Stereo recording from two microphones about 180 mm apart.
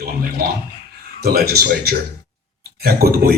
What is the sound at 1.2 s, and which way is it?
Speech, 60° right (ahead or behind).